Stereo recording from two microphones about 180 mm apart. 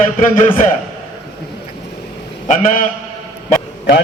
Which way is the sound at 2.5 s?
45° left (ahead or behind).